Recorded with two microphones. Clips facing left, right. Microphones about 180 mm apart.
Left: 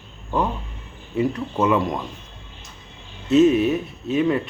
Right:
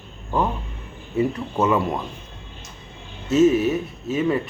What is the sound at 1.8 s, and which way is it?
Speech, 10° right (ahead or behind).